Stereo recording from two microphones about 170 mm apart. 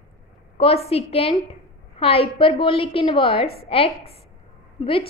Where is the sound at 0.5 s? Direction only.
35° left (ahead or behind).